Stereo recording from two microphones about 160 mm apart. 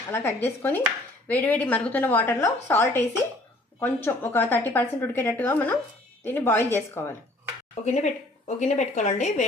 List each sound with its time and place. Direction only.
0.1 s a woman's voice: 15° left (ahead or behind)
7.9 s a woman's voice: 45° left (ahead or behind)